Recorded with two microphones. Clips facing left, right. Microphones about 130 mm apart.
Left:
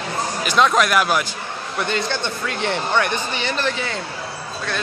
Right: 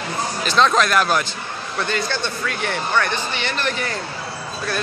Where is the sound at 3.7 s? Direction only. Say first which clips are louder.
Even; centre (ahead or behind).